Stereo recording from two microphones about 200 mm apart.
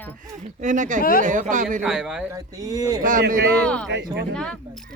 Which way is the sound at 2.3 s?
20° right (ahead or behind).